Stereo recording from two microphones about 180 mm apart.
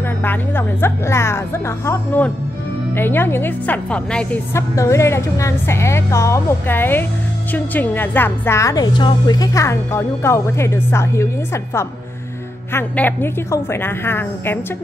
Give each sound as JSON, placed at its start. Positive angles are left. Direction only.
{"t": 0.2, "sound": "a woman's voice", "side_deg": 10}